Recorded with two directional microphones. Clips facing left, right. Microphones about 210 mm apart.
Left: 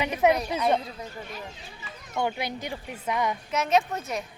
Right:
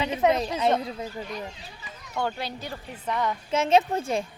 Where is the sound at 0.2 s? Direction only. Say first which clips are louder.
Left 1 dB; 10° left (ahead or behind).